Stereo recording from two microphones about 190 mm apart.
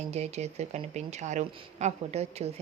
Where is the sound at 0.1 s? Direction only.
35° right (ahead or behind).